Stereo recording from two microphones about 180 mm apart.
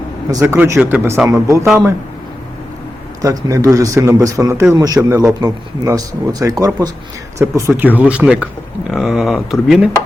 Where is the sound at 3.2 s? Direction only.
20° right (ahead or behind); by 9.8 s centre (ahead or behind).